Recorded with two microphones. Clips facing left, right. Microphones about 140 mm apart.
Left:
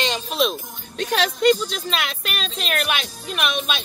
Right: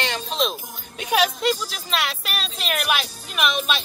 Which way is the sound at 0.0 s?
20° left (ahead or behind).